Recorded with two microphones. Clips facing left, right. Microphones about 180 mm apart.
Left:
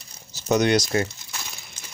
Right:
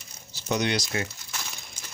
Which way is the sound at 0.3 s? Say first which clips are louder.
Left 7 dB; 45° left (ahead or behind).